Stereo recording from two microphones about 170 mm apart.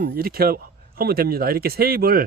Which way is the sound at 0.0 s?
60° right (ahead or behind).